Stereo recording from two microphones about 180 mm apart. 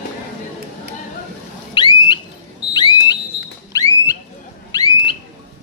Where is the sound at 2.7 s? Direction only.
25° left (ahead or behind).